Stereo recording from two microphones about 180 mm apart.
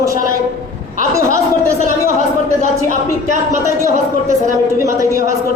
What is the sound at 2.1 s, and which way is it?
Speech, 45° right (ahead or behind).